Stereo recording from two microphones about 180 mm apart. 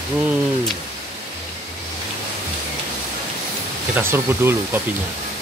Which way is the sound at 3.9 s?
10° right (ahead or behind).